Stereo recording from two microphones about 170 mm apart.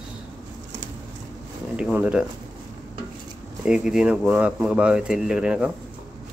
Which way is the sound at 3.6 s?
5° right (ahead or behind).